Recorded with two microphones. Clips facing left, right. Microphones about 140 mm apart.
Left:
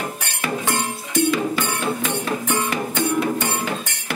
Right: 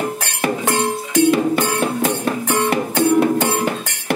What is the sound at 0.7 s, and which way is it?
Music, 65° right (ahead or behind).